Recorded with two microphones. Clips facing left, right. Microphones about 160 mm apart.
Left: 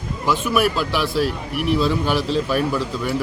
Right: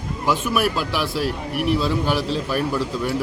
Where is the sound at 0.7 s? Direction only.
5° right (ahead or behind).